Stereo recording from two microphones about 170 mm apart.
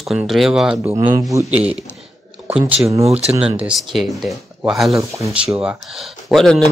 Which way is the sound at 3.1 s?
35° right (ahead or behind).